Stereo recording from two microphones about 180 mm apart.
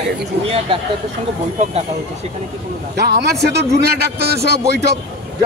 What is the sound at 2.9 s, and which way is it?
A man's voice, 70° right (ahead or behind).